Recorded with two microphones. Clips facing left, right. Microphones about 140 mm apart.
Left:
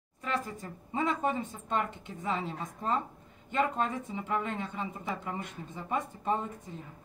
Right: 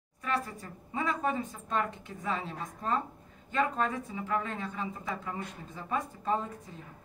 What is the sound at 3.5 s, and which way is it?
A woman's voice, 25° left (ahead or behind).